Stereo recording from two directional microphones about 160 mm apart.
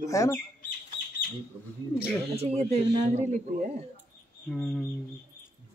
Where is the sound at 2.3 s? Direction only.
40° right (ahead or behind).